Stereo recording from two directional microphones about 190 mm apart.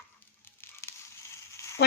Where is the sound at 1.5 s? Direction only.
15° left (ahead or behind).